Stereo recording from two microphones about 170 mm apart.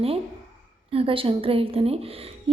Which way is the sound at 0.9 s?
35° right (ahead or behind).